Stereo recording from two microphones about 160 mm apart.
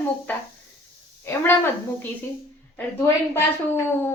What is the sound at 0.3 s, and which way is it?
A woman's voice, 10° left (ahead or behind).